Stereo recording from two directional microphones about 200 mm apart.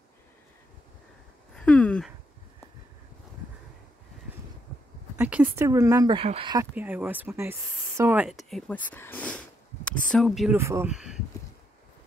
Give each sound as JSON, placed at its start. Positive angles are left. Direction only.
{"t": 1.5, "sound": "speech", "side_deg": 5}
{"t": 5.1, "sound": "speech", "side_deg": -10}
{"t": 6.7, "sound": "speech", "side_deg": -10}
{"t": 10.6, "sound": "speech", "side_deg": -15}
{"t": 10.9, "sound": "speech", "side_deg": -5}